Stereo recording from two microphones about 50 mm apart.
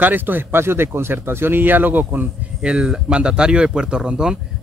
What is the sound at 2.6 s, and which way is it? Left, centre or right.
A man's voice, centre.